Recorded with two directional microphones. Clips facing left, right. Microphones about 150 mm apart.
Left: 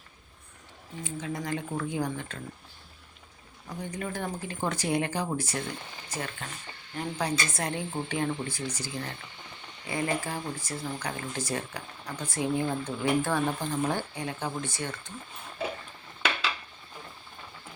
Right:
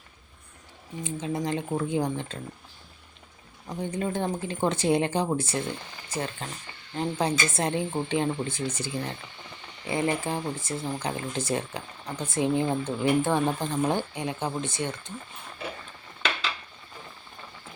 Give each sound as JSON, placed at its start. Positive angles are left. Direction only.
{"t": 1.0, "sound": "speech", "side_deg": -20}
{"t": 3.7, "sound": "speech", "side_deg": -25}